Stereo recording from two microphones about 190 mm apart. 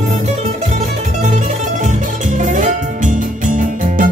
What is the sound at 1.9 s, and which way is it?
Music, 40° right (ahead or behind).